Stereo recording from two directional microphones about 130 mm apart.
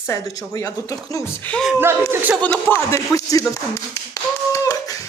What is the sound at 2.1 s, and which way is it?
Speech, 15° right (ahead or behind).